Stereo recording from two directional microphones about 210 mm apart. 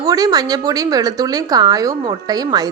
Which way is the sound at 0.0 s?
15° right (ahead or behind).